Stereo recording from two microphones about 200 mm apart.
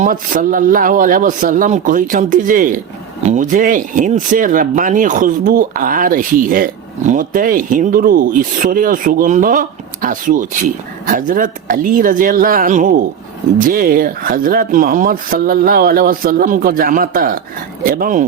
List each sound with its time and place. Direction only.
0.0 s speech: 40° right (ahead or behind)